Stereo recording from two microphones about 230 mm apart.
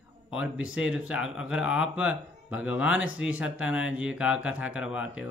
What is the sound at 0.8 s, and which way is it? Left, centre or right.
Speech, centre.